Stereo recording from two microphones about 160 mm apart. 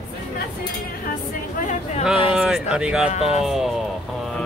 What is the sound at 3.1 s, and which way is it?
Speech, 45° left (ahead or behind).